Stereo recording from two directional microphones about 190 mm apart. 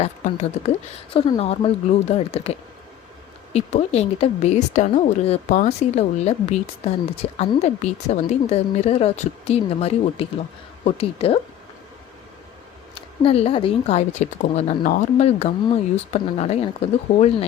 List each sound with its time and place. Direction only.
0.0 s a woman's voice: 35° left (ahead or behind)
13.2 s a woman's voice: 30° left (ahead or behind)